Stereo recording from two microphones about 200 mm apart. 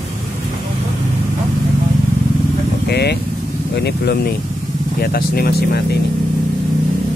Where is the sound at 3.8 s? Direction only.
55° left (ahead or behind).